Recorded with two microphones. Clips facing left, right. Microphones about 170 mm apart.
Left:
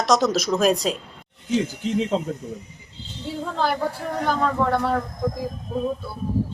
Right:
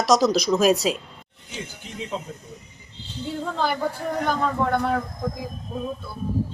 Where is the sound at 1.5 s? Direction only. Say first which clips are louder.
Left 14 dB; 90° left.